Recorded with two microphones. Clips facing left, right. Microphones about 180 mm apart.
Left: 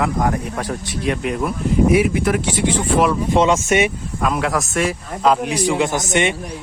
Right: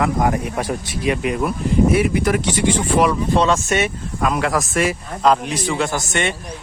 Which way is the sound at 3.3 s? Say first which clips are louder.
Left 2 dB; 20° left (ahead or behind).